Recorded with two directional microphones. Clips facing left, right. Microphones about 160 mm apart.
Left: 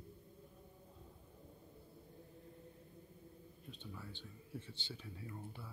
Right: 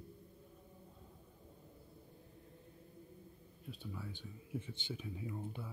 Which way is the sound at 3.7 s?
10° right (ahead or behind).